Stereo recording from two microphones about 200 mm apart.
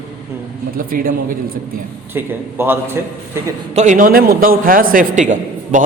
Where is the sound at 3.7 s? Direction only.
40° right (ahead or behind).